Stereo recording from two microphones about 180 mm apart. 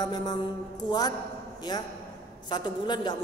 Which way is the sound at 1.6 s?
20° left (ahead or behind).